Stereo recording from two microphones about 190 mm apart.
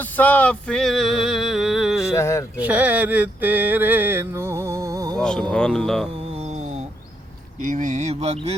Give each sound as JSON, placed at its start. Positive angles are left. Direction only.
{"t": 0.0, "sound": "male singing", "side_deg": 10}
{"t": 2.1, "sound": "speech", "side_deg": 15}
{"t": 2.6, "sound": "mantra", "side_deg": -10}
{"t": 5.2, "sound": "speech", "side_deg": 5}
{"t": 6.3, "sound": "mantra", "side_deg": -35}
{"t": 7.7, "sound": "a sound", "side_deg": -40}